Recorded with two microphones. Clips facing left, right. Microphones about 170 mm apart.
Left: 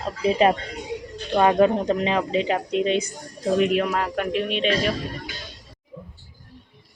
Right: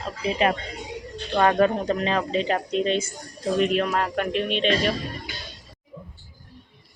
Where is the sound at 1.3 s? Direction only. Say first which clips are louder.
Left 2 dB; 15° left (ahead or behind).